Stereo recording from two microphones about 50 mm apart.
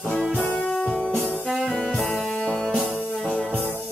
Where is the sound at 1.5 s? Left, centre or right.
Centre.